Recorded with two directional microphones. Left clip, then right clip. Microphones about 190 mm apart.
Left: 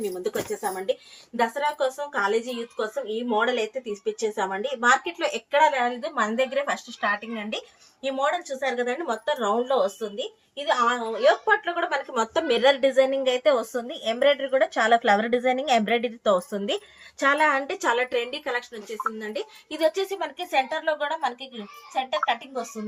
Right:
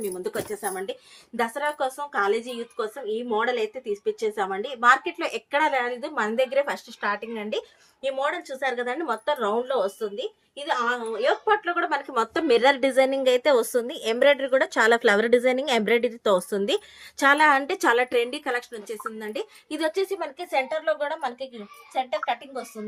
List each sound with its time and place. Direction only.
0.0 s speech: 40° right (ahead or behind); by 19.5 s 60° right (ahead or behind)
19.7 s speech: 35° right (ahead or behind)